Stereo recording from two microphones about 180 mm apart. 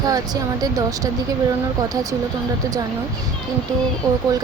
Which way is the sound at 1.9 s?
20° right (ahead or behind).